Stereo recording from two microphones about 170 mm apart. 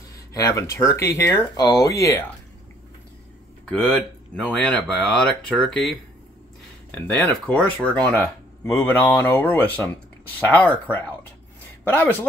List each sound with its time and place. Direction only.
0.1 s speech: 20° left (ahead or behind)
3.6 s speech: 5° left (ahead or behind)